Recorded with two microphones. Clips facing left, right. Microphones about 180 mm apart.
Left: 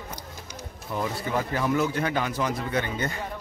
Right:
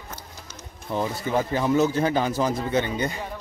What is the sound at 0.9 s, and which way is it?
Speech, 25° right (ahead or behind).